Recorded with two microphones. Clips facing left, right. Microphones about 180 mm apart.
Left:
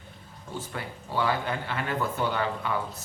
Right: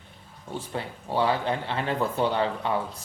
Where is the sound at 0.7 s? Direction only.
30° right (ahead or behind).